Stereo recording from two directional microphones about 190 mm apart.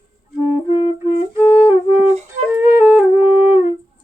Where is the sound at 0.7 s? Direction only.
30° left (ahead or behind).